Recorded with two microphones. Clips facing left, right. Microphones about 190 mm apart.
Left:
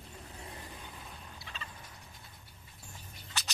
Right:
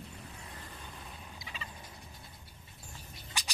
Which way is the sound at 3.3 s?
10° right (ahead or behind).